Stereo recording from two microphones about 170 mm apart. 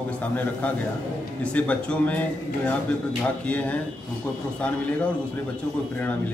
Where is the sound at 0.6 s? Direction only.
10° left (ahead or behind).